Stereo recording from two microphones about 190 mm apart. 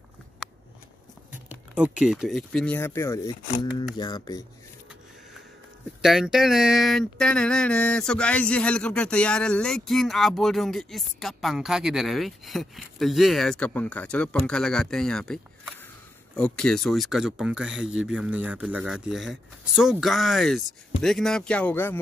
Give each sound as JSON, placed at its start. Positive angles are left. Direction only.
{"t": 1.8, "sound": "mantra", "side_deg": -5}
{"t": 3.7, "sound": "speech", "side_deg": 20}
{"t": 6.0, "sound": "mantra", "side_deg": 0}